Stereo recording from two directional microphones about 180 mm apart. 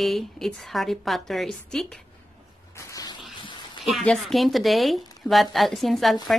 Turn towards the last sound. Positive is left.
turn(degrees=0)  # may be behind; listen again after turning